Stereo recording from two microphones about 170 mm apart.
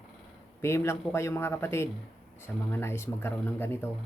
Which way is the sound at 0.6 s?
15° left (ahead or behind).